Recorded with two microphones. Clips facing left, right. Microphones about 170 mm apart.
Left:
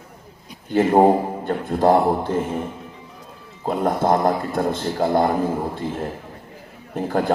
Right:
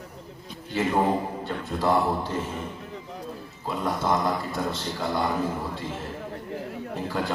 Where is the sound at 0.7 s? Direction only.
50° left (ahead or behind).